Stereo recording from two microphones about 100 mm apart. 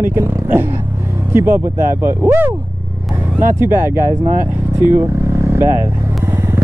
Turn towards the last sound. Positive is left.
turn(degrees=-25)  # may be behind; listen again after turning